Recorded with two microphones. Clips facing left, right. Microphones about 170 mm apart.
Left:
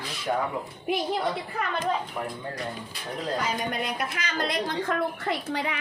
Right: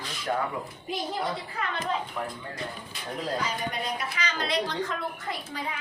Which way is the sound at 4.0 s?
50° left (ahead or behind).